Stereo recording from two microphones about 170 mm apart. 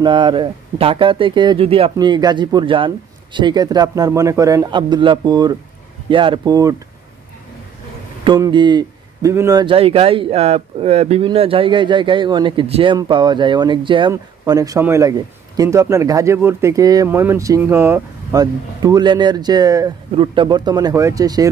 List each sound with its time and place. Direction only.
0.0 s a man's voice: 30° right (ahead or behind)
8.4 s a man's voice: 25° right (ahead or behind)